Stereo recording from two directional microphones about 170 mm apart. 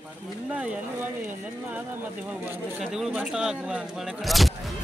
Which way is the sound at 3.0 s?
5° right (ahead or behind).